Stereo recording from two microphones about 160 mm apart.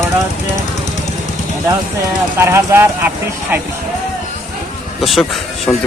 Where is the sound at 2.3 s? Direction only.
15° right (ahead or behind).